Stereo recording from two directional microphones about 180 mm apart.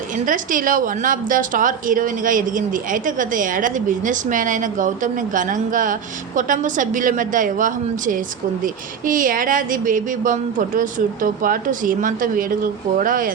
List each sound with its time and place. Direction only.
0.3 s a woman's voice: 50° right (ahead or behind)